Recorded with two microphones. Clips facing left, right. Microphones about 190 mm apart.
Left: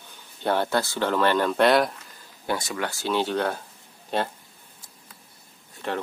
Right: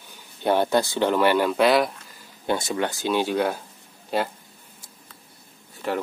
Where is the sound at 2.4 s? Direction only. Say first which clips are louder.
Right 4 dB; 25° right (ahead or behind); by 4.3 s 5° right (ahead or behind).